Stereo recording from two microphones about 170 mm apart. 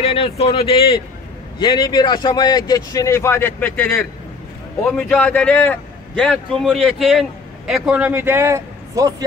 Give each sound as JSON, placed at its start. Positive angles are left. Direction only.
{"t": 0.0, "sound": "a man's voice", "side_deg": 35}